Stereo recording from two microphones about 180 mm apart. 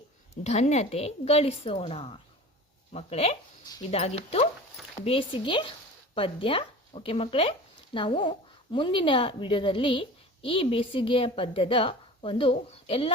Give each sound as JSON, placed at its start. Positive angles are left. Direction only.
{"t": 0.4, "sound": "a woman's voice", "side_deg": 40}